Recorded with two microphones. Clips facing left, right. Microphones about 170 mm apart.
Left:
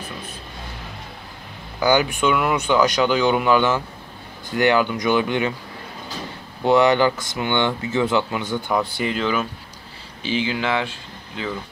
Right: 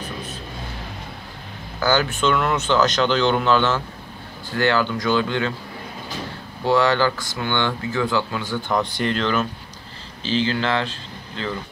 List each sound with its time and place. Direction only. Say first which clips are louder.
1.8 s speech: left 2 dB; 15° left (ahead or behind)
6.6 s speech: left 2 dB; 20° left (ahead or behind)
8.7 s speech: right 1 dB; 5° left (ahead or behind)